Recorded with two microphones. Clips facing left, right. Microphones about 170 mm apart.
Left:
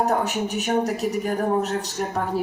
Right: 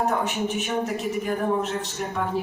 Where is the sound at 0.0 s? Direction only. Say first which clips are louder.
Left 2 dB; 40° left (ahead or behind).